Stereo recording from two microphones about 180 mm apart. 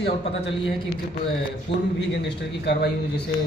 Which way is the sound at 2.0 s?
70° left (ahead or behind).